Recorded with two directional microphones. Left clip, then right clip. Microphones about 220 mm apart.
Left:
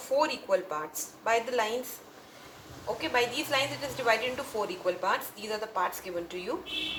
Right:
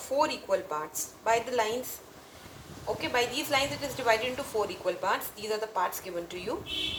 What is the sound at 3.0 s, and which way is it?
A woman's voice, 20° right (ahead or behind).